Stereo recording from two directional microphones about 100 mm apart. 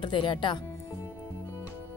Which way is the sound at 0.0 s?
50° left (ahead or behind).